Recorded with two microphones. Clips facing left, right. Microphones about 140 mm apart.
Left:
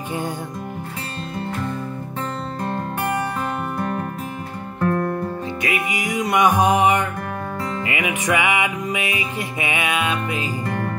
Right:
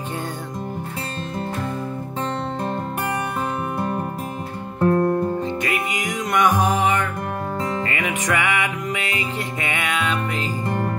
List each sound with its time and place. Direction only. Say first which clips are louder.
3.7 s music: even; 25° right (ahead or behind)
5.6 s music: even; 5° left (ahead or behind)
10.6 s music: right 1 dB; 20° right (ahead or behind)